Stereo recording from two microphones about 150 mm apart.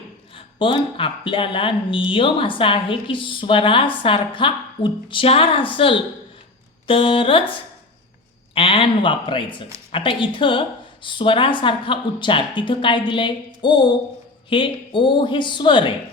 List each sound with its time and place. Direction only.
0.3 s a woman's voice: 35° left (ahead or behind)
8.5 s a woman's voice: 40° left (ahead or behind)